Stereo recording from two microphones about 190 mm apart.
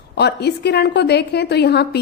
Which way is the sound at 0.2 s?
60° left (ahead or behind).